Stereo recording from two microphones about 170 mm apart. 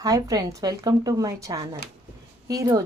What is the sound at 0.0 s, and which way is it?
Speech, 20° right (ahead or behind).